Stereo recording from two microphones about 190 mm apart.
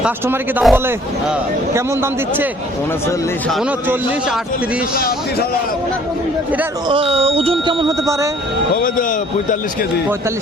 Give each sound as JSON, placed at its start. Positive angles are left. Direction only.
{"t": 0.0, "sound": "a man's voice", "side_deg": -5}
{"t": 3.5, "sound": "a man's voice", "side_deg": -5}
{"t": 4.9, "sound": "speech", "side_deg": 50}
{"t": 6.8, "sound": "a man's voice", "side_deg": -30}
{"t": 8.7, "sound": "speech", "side_deg": 45}